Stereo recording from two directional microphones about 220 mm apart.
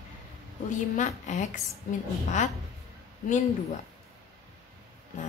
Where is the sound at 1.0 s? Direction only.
30° left (ahead or behind).